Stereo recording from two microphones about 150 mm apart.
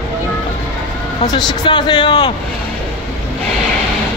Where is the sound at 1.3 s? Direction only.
30° left (ahead or behind).